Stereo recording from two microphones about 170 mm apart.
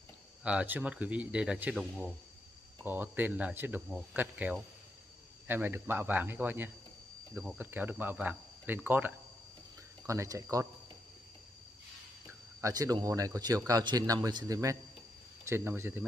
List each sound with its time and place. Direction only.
0.4 s a man's voice: 5° right (ahead or behind)
12.6 s a man's voice: 20° right (ahead or behind)